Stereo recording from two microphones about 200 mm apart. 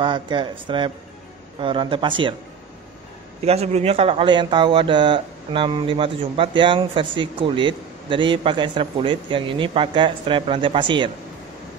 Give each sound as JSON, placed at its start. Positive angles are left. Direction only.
{"t": 0.0, "sound": "speech", "side_deg": -25}
{"t": 3.4, "sound": "speech", "side_deg": -30}